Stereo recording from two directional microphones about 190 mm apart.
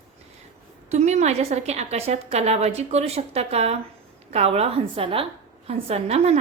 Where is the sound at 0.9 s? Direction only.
35° right (ahead or behind).